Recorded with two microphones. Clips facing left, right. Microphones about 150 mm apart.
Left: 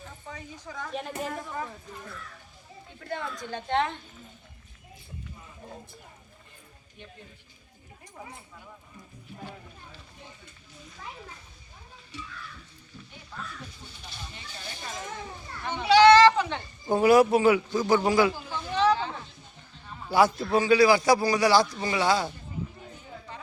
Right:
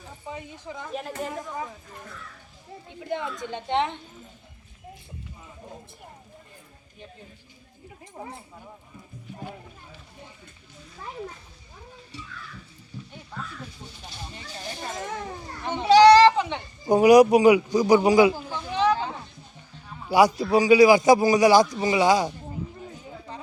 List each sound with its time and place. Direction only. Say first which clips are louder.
0.3 s a woman's voice: right 5 dB; 15° right (ahead or behind)
0.9 s a woman's voice: right 1 dB; centre (ahead or behind)
1.3 s a man's voice: right 2 dB; 15° right (ahead or behind)
3.0 s a woman's voice: right 4 dB; 20° right (ahead or behind)
8.2 s a woman's voice: right 6 dB; 30° right (ahead or behind)
14.3 s a sound: right 6 dB; 40° right (ahead or behind)
15.9 s a sound: right 3 dB; 40° right (ahead or behind)
16.4 s speech: right 2 dB; 15° right (ahead or behind)
20.1 s a man's voice: right 3 dB; 15° right (ahead or behind)